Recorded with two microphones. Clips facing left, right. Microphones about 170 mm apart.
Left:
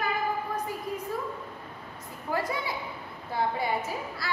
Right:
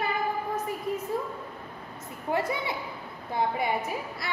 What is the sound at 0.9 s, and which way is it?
Speech, 25° right (ahead or behind).